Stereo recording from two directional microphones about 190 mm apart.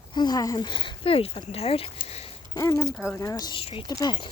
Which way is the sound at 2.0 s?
35° left (ahead or behind).